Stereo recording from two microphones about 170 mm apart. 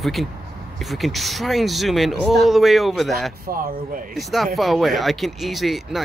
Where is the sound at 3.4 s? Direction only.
60° right (ahead or behind).